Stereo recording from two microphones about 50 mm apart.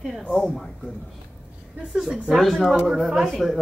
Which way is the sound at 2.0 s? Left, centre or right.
Centre.